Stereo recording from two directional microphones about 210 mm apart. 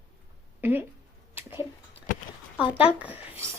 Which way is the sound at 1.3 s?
10° right (ahead or behind).